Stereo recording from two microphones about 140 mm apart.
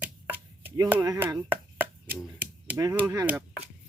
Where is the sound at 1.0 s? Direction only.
25° right (ahead or behind).